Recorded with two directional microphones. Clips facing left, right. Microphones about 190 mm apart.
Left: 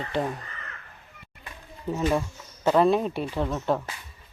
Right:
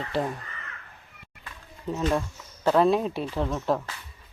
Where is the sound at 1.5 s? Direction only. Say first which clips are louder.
Left 1 dB; 10° left (ahead or behind).